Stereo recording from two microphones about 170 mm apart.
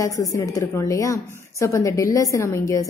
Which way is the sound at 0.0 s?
20° left (ahead or behind).